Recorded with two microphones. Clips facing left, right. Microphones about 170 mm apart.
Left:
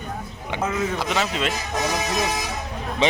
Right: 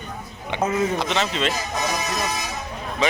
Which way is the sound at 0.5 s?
5° left (ahead or behind).